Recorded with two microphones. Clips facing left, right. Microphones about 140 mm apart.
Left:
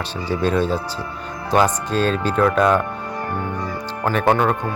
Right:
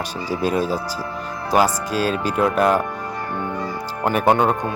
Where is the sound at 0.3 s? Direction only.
10° right (ahead or behind).